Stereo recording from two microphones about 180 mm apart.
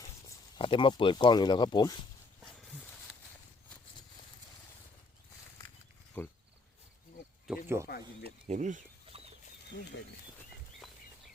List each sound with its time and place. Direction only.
0.3 s speech: 25° left (ahead or behind)
6.2 s cricket: 10° left (ahead or behind)
7.5 s a sound: 5° right (ahead or behind)
7.9 s speech: 60° left (ahead or behind)
8.4 s chicken: 40° right (ahead or behind)